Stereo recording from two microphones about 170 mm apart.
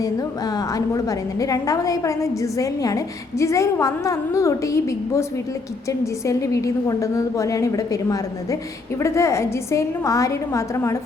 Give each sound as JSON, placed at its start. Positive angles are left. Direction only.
{"t": 0.9, "sound": "a woman's voice", "side_deg": 20}
{"t": 6.2, "sound": "a woman's voice", "side_deg": 20}
{"t": 9.0, "sound": "a woman's voice", "side_deg": 15}